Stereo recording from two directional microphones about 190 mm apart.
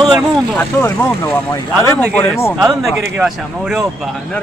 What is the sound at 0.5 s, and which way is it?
Speech, 10° left (ahead or behind).